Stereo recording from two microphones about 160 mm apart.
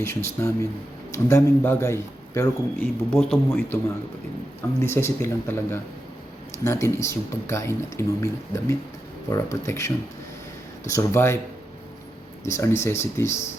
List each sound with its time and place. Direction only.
0.0 s a man's voice: 15° left (ahead or behind)
4.8 s a man's voice: 15° left (ahead or behind)
12.5 s a man's voice: 15° left (ahead or behind)